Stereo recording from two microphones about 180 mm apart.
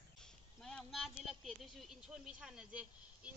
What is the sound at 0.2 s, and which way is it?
Speech, 5° left (ahead or behind).